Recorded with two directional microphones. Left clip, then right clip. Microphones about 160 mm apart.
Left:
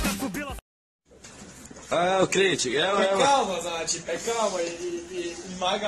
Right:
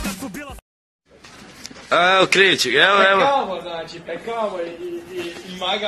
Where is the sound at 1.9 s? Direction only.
5° left (ahead or behind).